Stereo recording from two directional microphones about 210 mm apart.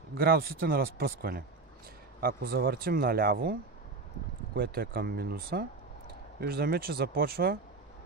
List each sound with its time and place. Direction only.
0.2 s speech: 45° right (ahead or behind)
4.6 s speech: 45° right (ahead or behind)